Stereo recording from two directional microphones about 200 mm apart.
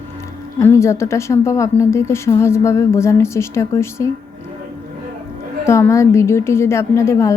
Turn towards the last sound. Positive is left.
turn(degrees=15)  # may be behind; listen again after turning